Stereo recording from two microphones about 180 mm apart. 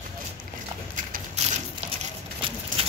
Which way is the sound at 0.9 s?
45° right (ahead or behind).